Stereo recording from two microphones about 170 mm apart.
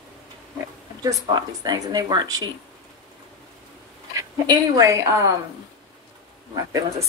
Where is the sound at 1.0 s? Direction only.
20° right (ahead or behind).